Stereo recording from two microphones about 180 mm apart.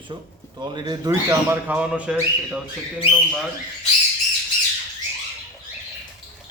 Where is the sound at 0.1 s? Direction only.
25° right (ahead or behind).